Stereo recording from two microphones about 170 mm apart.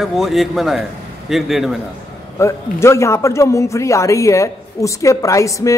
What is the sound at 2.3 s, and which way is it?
A man's voice, 15° left (ahead or behind).